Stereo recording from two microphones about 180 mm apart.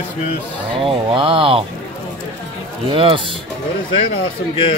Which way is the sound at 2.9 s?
30° right (ahead or behind).